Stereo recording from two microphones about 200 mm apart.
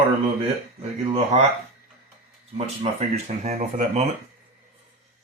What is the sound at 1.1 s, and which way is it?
Speech, 30° right (ahead or behind).